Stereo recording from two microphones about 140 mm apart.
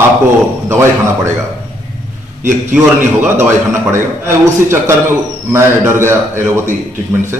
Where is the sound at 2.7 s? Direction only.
15° right (ahead or behind).